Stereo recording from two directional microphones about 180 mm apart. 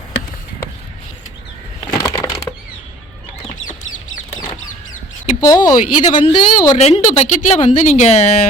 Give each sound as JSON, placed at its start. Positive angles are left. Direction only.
{"t": 2.0, "sound": "crushing", "side_deg": 20}
{"t": 5.4, "sound": "speech", "side_deg": 20}
{"t": 6.7, "sound": "speech", "side_deg": 35}